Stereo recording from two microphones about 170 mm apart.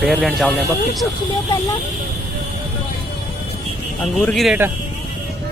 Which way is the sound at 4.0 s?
Centre (ahead or behind).